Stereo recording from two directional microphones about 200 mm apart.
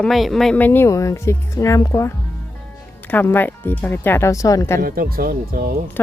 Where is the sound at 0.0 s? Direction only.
Centre (ahead or behind).